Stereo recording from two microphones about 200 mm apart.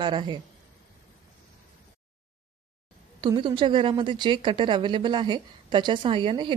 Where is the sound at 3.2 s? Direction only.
25° right (ahead or behind).